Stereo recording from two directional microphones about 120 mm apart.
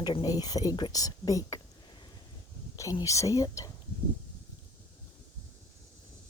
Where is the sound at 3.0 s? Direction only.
25° left (ahead or behind).